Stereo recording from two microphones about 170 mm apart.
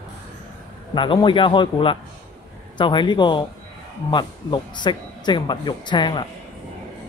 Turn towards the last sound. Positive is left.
turn(degrees=25)  # may be behind; listen again after turning